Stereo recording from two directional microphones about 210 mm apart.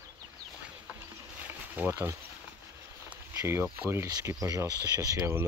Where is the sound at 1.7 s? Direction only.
10° right (ahead or behind).